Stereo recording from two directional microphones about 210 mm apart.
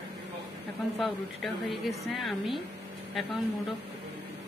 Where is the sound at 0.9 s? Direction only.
Centre (ahead or behind).